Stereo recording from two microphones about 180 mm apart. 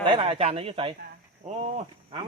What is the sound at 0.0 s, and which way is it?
Speech, 30° right (ahead or behind).